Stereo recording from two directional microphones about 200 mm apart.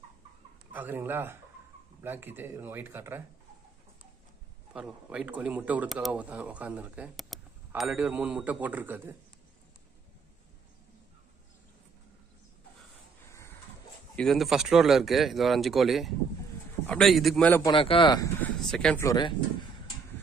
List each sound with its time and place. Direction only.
0.7 s speech: 10° right (ahead or behind)
4.7 s speech: 5° right (ahead or behind)
13.3 s a sound: 15° left (ahead or behind)
14.1 s speech: centre (ahead or behind)
17.6 s speech: 25° left (ahead or behind)
18.4 s speech: 5° left (ahead or behind)
19.0 s speech: 20° left (ahead or behind)